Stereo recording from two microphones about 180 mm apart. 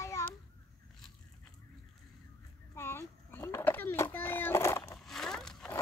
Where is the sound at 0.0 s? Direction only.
15° left (ahead or behind).